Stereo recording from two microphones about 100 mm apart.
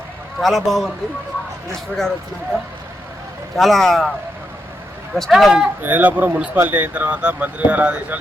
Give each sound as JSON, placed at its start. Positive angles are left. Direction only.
{"t": 0.3, "sound": "a man's voice", "side_deg": 0}
{"t": 3.5, "sound": "a man's voice", "side_deg": 0}
{"t": 5.1, "sound": "a man's voice", "side_deg": 0}
{"t": 5.8, "sound": "speech", "side_deg": -20}